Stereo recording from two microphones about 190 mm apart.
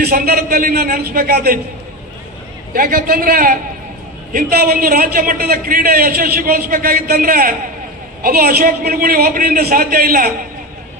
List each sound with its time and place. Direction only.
0.0 s a man's voice: 50° right (ahead or behind)
2.7 s a man's voice: 50° right (ahead or behind)